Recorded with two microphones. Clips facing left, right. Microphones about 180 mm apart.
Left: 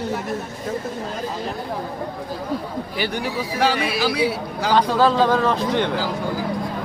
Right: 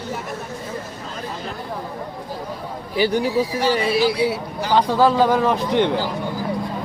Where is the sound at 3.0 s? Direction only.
40° right (ahead or behind).